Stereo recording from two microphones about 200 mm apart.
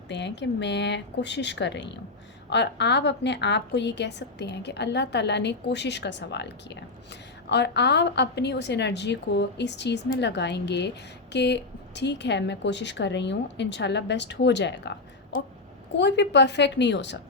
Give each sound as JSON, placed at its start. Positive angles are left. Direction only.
{"t": 0.1, "sound": "a woman's voice", "side_deg": 60}
{"t": 16.0, "sound": "a woman's voice", "side_deg": 60}